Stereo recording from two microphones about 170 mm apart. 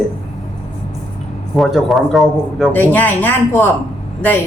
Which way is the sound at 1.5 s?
Centre (ahead or behind).